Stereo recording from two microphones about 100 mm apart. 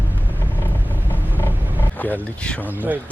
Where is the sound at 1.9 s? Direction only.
15° left (ahead or behind).